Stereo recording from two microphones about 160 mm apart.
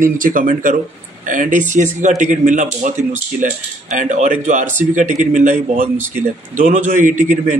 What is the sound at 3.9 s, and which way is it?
Speech, 50° right (ahead or behind).